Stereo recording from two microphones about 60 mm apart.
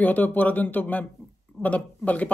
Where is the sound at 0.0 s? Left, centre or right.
Left.